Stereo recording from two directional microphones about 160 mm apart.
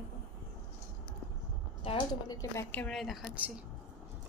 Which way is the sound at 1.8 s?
35° left (ahead or behind).